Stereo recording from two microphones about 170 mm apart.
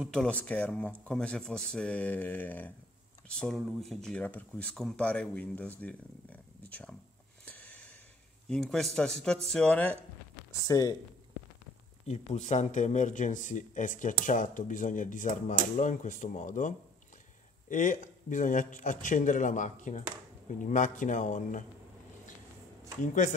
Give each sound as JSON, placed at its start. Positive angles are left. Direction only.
{"t": 0.0, "sound": "speech", "side_deg": 5}
{"t": 7.4, "sound": "a sound", "side_deg": 10}
{"t": 8.5, "sound": "speech", "side_deg": 0}
{"t": 10.7, "sound": "speech", "side_deg": 20}
{"t": 12.1, "sound": "speech", "side_deg": 45}